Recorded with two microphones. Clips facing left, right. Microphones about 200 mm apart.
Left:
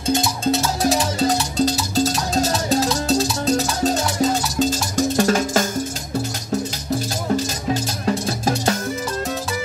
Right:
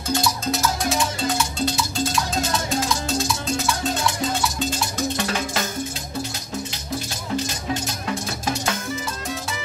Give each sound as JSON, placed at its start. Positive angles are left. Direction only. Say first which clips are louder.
{"t": 0.1, "sound": "music", "louder": "left 4 dB", "side_deg": 25}
{"t": 7.7, "sound": "music", "louder": "left 5 dB", "side_deg": 35}